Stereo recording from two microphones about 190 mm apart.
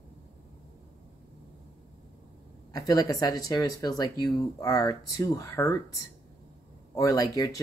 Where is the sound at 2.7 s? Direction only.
20° left (ahead or behind).